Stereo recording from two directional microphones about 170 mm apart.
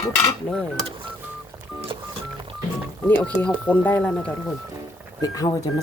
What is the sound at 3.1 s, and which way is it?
Speech, 10° left (ahead or behind).